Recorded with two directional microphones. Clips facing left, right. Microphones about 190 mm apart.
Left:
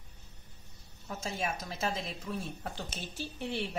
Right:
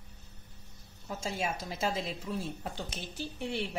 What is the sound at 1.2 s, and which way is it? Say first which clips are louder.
Speech: right 1 dB; 25° right (ahead or behind).